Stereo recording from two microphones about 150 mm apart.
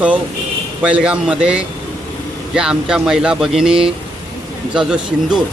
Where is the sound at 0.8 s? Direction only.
5° right (ahead or behind).